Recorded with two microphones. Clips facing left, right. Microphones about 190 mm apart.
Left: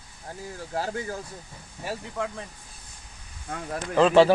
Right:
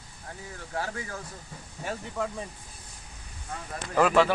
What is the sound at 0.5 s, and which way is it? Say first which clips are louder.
Speech: left 4 dB; 30° left (ahead or behind).